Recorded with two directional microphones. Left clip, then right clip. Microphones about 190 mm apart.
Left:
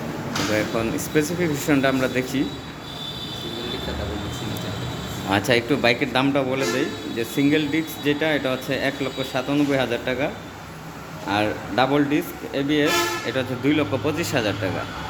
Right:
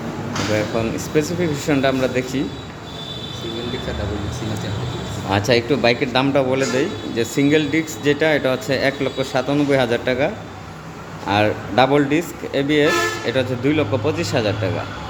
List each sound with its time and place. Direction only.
0.5 s speech: centre (ahead or behind)
5.3 s a man's voice: centre (ahead or behind)